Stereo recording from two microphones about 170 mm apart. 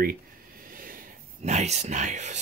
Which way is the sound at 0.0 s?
60° right (ahead or behind).